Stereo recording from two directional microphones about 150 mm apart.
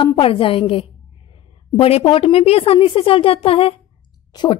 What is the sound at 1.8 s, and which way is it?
A woman's voice, 40° left (ahead or behind).